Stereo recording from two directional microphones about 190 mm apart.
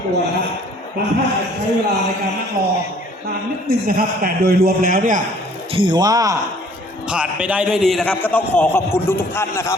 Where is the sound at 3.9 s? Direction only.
50° right (ahead or behind).